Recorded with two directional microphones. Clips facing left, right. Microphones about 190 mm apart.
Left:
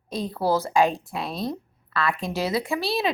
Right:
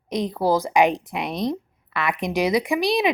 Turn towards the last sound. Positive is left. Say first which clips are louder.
# right 5 dB
turn(degrees=-15)  # may be behind; listen again after turning